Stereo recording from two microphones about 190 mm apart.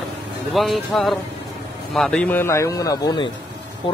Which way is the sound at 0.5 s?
Centre (ahead or behind).